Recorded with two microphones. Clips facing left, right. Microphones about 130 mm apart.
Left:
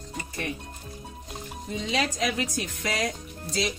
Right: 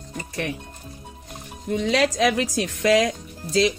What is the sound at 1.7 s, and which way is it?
A woman's voice, 65° right (ahead or behind).